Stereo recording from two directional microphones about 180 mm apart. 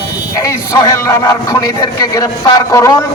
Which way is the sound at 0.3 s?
20° left (ahead or behind).